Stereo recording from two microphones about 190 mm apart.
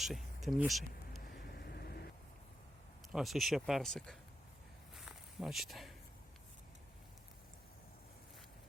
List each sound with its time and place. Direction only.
0.0 s speech: centre (ahead or behind)
1.3 s vehicle: 55° left (ahead or behind)
3.1 s speech: centre (ahead or behind)
4.9 s walk: centre (ahead or behind)